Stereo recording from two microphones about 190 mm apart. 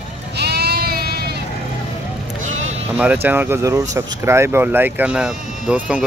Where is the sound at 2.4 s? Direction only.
35° right (ahead or behind).